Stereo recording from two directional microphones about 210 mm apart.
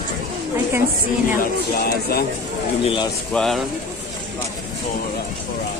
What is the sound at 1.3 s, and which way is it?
Speech, 45° left (ahead or behind).